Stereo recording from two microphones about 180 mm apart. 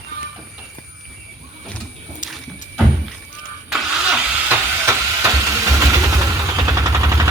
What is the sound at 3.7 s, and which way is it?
Vehicle, 5° right (ahead or behind).